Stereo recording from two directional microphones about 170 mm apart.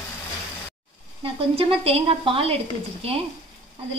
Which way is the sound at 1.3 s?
30° right (ahead or behind).